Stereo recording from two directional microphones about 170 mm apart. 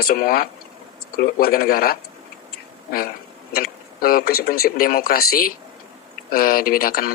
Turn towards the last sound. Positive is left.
turn(degrees=60)  # may be behind; listen again after turning